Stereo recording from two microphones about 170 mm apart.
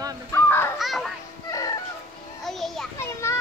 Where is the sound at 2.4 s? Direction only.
Centre (ahead or behind).